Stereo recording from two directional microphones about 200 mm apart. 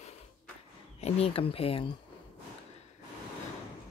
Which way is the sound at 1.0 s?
30° left (ahead or behind).